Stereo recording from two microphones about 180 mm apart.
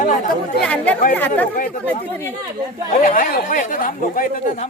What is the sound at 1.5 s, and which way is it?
Speech, 50° left (ahead or behind).